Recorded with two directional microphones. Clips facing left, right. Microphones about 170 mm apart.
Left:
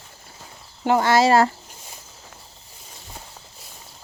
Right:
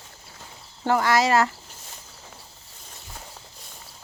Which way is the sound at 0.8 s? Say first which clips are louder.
Left 4 dB; 25° left (ahead or behind).